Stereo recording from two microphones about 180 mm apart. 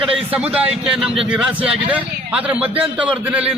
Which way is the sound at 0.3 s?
5° right (ahead or behind).